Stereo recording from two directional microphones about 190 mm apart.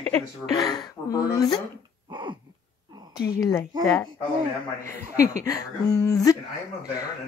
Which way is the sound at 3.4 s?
15° left (ahead or behind).